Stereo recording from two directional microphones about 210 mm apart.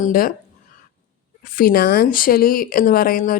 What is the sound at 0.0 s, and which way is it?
Speech, 40° left (ahead or behind).